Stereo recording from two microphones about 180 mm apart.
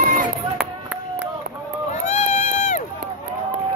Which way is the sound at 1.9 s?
40° left (ahead or behind).